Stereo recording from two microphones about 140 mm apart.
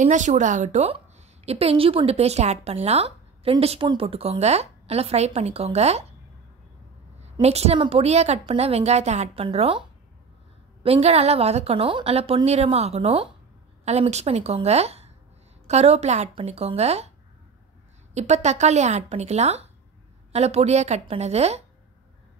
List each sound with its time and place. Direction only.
0.0 s a woman's voice: 60° right (ahead or behind)
7.4 s a woman's voice: 45° right (ahead or behind)
18.1 s a woman's voice: 55° right (ahead or behind)